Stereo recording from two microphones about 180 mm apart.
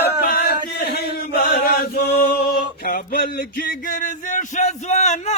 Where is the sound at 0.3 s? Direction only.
60° left (ahead or behind).